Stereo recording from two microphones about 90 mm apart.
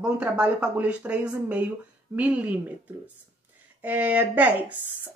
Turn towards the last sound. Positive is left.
turn(degrees=-20)  # may be behind; listen again after turning